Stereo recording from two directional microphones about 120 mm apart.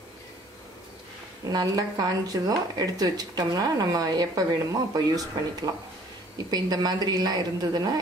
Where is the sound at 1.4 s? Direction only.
30° right (ahead or behind).